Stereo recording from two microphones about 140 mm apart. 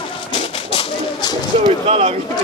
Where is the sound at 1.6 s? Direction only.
45° right (ahead or behind).